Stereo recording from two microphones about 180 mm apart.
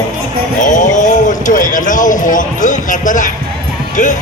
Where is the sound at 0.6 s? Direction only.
45° left (ahead or behind).